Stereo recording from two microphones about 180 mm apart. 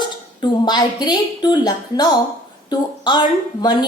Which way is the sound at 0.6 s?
20° left (ahead or behind).